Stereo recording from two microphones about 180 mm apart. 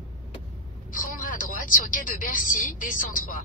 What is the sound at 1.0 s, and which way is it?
Speech, 50° left (ahead or behind).